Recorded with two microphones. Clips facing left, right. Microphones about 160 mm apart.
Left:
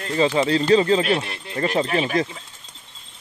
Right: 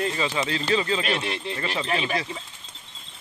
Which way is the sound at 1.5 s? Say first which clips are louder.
Left 8 dB; 45° left (ahead or behind).